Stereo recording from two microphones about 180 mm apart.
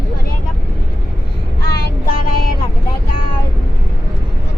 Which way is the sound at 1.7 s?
55° left (ahead or behind).